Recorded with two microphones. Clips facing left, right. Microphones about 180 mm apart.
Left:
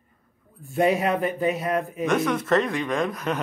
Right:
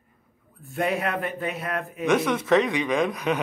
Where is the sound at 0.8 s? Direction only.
Centre (ahead or behind).